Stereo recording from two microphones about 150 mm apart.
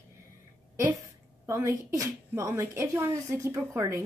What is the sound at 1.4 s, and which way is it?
A woman's voice, 20° right (ahead or behind).